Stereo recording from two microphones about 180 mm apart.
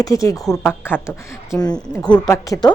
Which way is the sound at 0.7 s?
10° left (ahead or behind).